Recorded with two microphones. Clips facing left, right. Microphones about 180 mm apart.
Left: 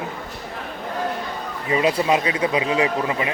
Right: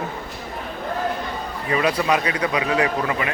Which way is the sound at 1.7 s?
25° left (ahead or behind).